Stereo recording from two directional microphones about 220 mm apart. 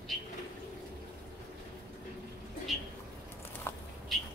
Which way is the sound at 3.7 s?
10° left (ahead or behind).